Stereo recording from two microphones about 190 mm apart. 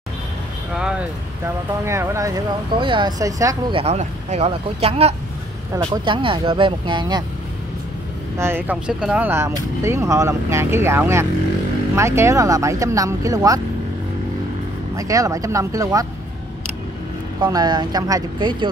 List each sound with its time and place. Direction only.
0.7 s speech: 5° right (ahead or behind)
3.7 s speech: 35° right (ahead or behind)
8.4 s speech: 10° right (ahead or behind)
15.0 s speech: 15° right (ahead or behind)
17.4 s speech: 20° right (ahead or behind)